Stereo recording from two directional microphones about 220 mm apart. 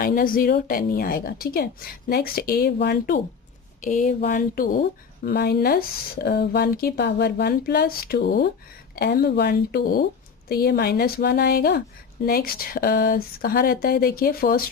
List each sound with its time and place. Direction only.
0.0 s speech: 40° left (ahead or behind)
3.8 s speech: 35° left (ahead or behind)